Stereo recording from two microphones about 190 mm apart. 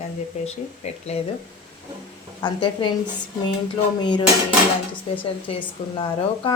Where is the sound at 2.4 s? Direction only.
25° left (ahead or behind).